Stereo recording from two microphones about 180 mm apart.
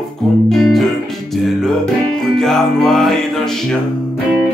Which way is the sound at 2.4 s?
Centre (ahead or behind).